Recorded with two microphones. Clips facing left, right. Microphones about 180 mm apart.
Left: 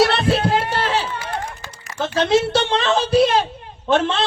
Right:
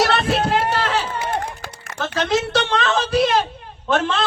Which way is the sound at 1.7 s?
60° right (ahead or behind).